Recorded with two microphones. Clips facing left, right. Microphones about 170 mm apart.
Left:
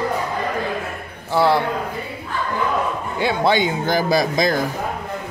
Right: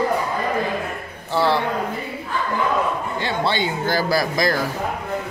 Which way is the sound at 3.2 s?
15° left (ahead or behind).